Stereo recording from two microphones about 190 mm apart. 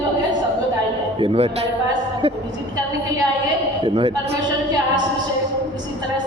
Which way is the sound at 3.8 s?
30° right (ahead or behind).